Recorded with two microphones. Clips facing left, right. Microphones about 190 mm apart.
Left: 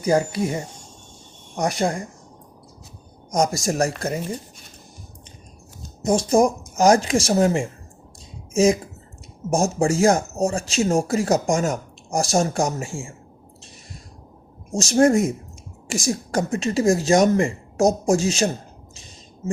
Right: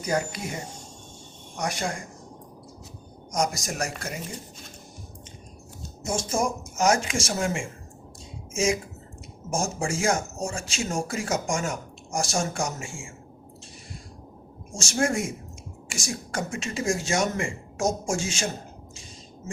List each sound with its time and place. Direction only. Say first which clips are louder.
0.0 s speech: left 8 dB; 30° left (ahead or behind)
1.5 s speech: left 7 dB; 35° left (ahead or behind)
3.3 s speech: left 7 dB; 30° left (ahead or behind)
6.1 s speech: left 9 dB; 35° left (ahead or behind)
14.7 s speech: left 10 dB; 35° left (ahead or behind)